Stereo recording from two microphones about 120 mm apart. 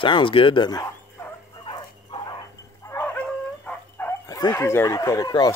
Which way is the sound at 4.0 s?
15° left (ahead or behind).